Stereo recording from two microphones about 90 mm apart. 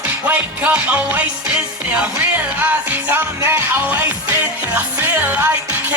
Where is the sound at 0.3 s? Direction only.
20° right (ahead or behind).